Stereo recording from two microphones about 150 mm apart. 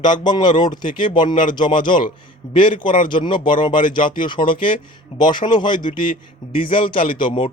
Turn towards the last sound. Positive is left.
turn(degrees=35)  # may be behind; listen again after turning